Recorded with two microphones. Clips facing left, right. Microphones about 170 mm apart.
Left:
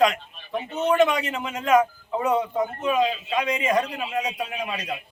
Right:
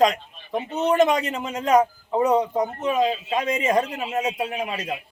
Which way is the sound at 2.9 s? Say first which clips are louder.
Even; 45° right (ahead or behind).